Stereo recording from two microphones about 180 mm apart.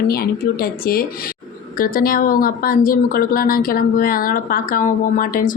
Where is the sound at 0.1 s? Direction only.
55° left (ahead or behind).